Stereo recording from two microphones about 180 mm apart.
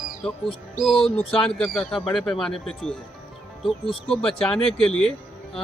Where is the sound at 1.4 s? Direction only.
5° left (ahead or behind).